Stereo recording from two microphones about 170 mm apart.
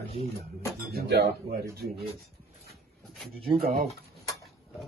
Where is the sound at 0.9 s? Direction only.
75° right (ahead or behind).